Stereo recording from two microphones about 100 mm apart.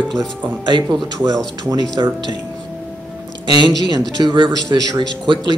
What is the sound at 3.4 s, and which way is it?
Speech, 50° right (ahead or behind).